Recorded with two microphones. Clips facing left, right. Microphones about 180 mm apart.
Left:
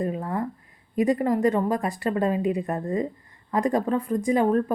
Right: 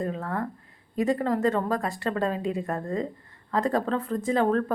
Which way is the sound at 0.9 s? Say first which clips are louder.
Left 3 dB; 15° left (ahead or behind).